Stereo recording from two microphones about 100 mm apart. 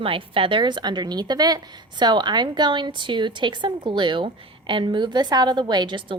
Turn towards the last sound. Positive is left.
turn(degrees=-50)  # may be behind; listen again after turning